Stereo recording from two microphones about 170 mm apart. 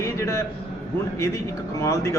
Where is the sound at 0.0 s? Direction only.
15° left (ahead or behind).